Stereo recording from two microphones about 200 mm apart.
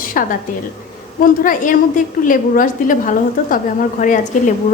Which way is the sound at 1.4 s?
45° left (ahead or behind).